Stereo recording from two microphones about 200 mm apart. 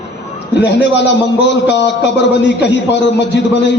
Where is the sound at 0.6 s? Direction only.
60° left (ahead or behind).